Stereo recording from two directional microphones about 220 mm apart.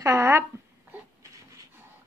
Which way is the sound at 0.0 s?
10° right (ahead or behind).